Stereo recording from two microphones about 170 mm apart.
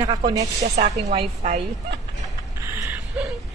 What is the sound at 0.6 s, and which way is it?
A woman's voice, 40° right (ahead or behind).